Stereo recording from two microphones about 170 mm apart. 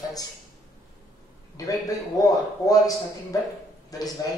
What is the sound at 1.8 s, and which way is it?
Speech, 20° left (ahead or behind).